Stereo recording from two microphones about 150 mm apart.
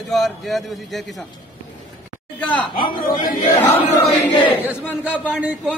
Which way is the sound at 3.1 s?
30° left (ahead or behind).